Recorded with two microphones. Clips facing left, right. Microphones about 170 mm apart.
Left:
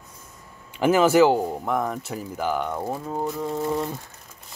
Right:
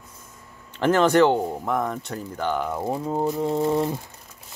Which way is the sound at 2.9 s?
20° right (ahead or behind).